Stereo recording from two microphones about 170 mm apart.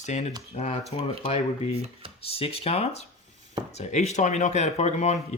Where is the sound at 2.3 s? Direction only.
35° left (ahead or behind).